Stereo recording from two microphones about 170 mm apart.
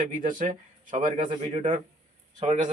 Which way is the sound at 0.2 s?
50° right (ahead or behind).